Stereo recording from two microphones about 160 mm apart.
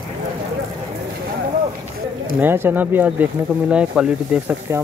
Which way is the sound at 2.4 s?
15° right (ahead or behind).